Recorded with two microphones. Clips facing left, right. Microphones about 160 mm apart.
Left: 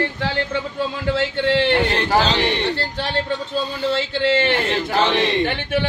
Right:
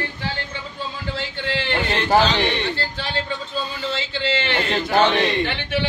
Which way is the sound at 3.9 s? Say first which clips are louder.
Left 6 dB; 60° left (ahead or behind).